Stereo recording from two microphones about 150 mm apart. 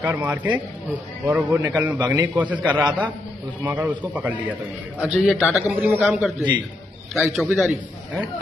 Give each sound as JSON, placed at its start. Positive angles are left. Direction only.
{"t": 0.0, "sound": "a man's voice", "side_deg": -10}
{"t": 6.0, "sound": "speech", "side_deg": 0}
{"t": 7.3, "sound": "speech", "side_deg": 0}